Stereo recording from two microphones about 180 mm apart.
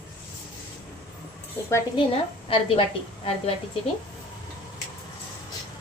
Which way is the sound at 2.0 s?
30° left (ahead or behind).